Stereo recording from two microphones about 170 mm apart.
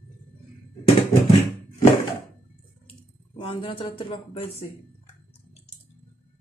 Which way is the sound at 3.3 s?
30° left (ahead or behind).